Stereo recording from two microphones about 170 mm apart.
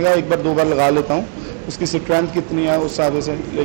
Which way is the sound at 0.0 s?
20° right (ahead or behind).